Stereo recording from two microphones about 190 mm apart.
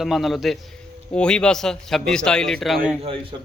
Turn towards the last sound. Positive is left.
turn(degrees=-30)  # may be behind; listen again after turning